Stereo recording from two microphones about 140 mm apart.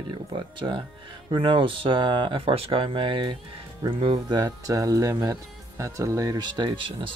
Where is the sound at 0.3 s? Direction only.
35° right (ahead or behind).